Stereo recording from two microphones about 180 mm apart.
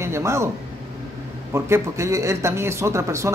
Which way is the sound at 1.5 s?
15° right (ahead or behind).